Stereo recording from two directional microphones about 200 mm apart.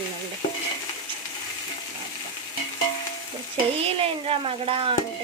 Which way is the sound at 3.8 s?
30° right (ahead or behind).